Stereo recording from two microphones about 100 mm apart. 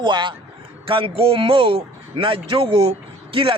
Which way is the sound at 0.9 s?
60° right (ahead or behind).